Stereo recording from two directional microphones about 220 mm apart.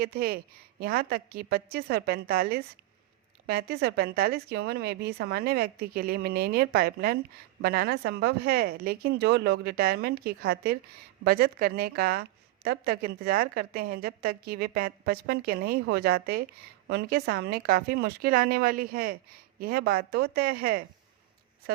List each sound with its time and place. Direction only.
0.0 s speech: 45° right (ahead or behind)